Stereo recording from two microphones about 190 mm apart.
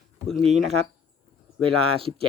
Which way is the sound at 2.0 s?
30° right (ahead or behind).